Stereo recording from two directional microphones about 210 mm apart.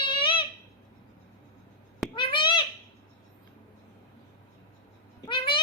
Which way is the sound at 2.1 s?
25° left (ahead or behind).